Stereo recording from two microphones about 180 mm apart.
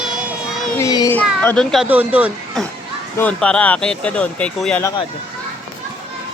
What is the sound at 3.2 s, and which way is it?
Speech, 5° left (ahead or behind).